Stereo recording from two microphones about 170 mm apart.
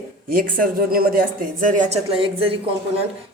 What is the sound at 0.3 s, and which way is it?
A woman's voice, 55° right (ahead or behind).